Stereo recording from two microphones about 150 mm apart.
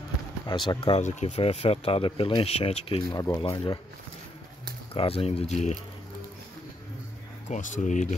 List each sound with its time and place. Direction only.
0.5 s speech: 30° left (ahead or behind)
1.0 s speech: 45° left (ahead or behind)
3.2 s speech: 20° left (ahead or behind)
3.4 s speech: 30° left (ahead or behind)
4.9 s speech: 40° left (ahead or behind)
7.4 s speech: 55° left (ahead or behind)